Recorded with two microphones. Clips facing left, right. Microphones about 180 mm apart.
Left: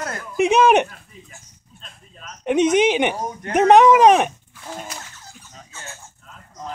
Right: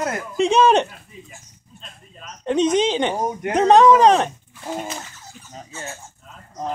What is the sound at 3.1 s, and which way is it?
Speech, 20° right (ahead or behind).